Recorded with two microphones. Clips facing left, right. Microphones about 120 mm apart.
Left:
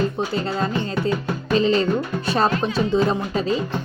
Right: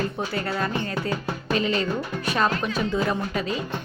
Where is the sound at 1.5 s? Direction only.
30° left (ahead or behind).